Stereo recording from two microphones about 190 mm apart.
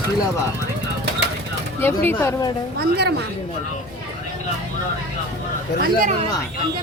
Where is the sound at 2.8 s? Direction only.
60° right (ahead or behind).